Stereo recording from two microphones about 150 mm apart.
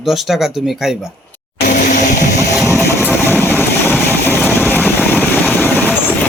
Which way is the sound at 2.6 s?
20° left (ahead or behind).